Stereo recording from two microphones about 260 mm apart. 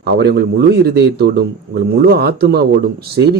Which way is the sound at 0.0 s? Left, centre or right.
Right.